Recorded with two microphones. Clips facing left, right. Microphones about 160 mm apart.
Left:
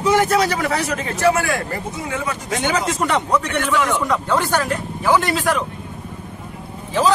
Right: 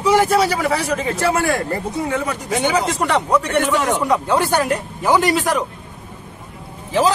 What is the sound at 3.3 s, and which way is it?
Speech, 10° right (ahead or behind).